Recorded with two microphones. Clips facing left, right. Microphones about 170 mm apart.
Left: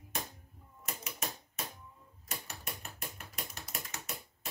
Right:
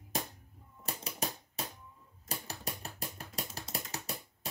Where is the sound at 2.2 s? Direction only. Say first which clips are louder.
Right 3 dB; 35° right (ahead or behind).